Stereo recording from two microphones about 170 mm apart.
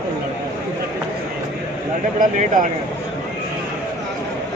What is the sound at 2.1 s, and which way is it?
Speech, 50° right (ahead or behind).